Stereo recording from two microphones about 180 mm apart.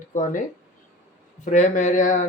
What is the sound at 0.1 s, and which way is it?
Speech, 45° left (ahead or behind).